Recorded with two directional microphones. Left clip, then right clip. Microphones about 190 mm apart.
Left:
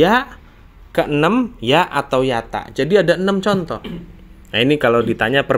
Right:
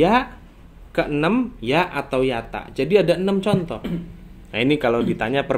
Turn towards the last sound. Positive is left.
turn(degrees=30)  # may be behind; listen again after turning